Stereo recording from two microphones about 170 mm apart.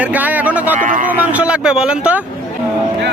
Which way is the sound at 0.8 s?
50° right (ahead or behind).